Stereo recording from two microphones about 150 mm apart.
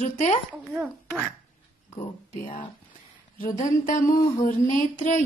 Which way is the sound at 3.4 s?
55° left (ahead or behind).